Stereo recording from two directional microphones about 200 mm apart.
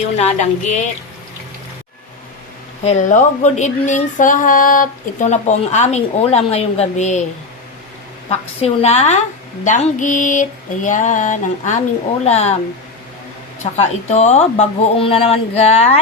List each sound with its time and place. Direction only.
0.2 s speech: 35° left (ahead or behind)
2.8 s speech: 35° left (ahead or behind)
8.3 s speech: 30° left (ahead or behind)
13.7 s speech: 35° left (ahead or behind)